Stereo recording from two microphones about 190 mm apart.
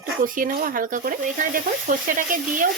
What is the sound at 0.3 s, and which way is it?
A woman's voice, 45° right (ahead or behind).